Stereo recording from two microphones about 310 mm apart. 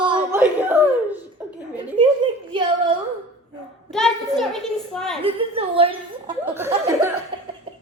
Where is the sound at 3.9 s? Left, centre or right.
Centre.